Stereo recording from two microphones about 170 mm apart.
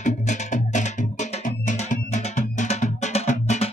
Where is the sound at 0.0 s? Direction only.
45° left (ahead or behind).